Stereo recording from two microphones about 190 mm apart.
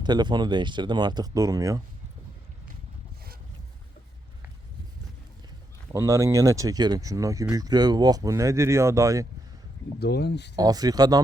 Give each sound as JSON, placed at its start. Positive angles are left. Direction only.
{"t": 0.0, "sound": "speech", "side_deg": -20}
{"t": 5.9, "sound": "speech", "side_deg": -15}
{"t": 10.0, "sound": "speech", "side_deg": 60}
{"t": 10.6, "sound": "speech", "side_deg": -20}